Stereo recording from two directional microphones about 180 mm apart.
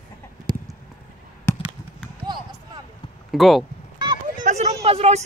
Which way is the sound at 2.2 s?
25° right (ahead or behind).